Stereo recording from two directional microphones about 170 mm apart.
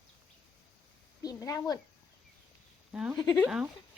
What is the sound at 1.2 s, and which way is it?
Speech, 20° left (ahead or behind).